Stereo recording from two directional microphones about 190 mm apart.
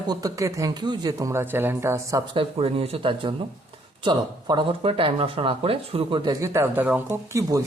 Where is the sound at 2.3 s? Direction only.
30° right (ahead or behind).